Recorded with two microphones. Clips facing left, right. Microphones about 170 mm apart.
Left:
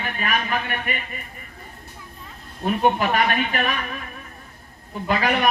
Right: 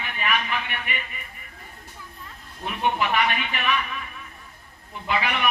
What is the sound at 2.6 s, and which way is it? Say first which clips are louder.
A man's voice: left 5 dB; 45° left (ahead or behind).